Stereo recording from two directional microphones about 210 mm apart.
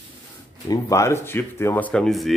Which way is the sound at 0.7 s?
15° left (ahead or behind).